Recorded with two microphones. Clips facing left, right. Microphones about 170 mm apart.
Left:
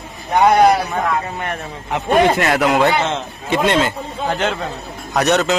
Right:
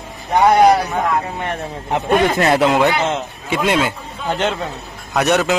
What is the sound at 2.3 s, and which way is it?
Speech, 30° right (ahead or behind).